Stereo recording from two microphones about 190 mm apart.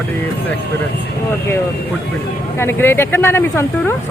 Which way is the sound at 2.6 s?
10° left (ahead or behind).